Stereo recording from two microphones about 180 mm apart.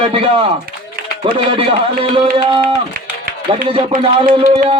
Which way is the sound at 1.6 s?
30° right (ahead or behind).